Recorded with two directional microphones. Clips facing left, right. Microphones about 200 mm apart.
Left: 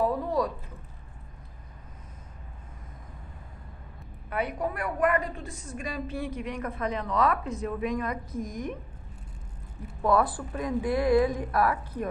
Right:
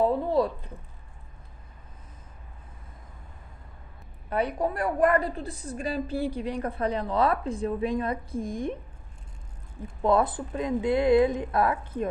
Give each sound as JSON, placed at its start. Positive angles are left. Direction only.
{"t": 0.0, "sound": "a sound", "side_deg": -25}
{"t": 4.3, "sound": "a woman's voice", "side_deg": -30}
{"t": 10.0, "sound": "speech", "side_deg": -25}